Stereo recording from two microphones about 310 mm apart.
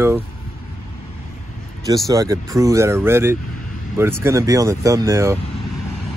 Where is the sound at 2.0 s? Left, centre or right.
Centre.